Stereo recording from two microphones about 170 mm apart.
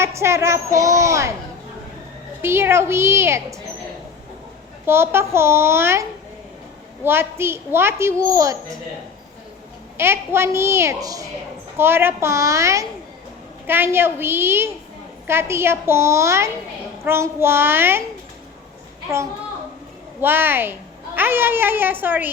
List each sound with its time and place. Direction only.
0.0 s a child's voice: 15° right (ahead or behind)
2.4 s a child's voice: 15° right (ahead or behind)
4.9 s a child's voice: 15° right (ahead or behind)
10.0 s a child's voice: 15° right (ahead or behind)
20.2 s a child's voice: 10° right (ahead or behind)